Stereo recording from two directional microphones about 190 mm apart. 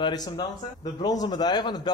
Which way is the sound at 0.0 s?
20° left (ahead or behind).